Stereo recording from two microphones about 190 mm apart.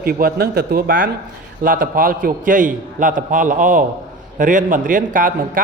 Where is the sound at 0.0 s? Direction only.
50° right (ahead or behind).